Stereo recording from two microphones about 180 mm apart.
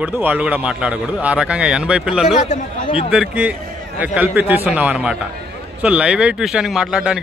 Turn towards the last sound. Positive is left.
turn(degrees=-5)  # may be behind; listen again after turning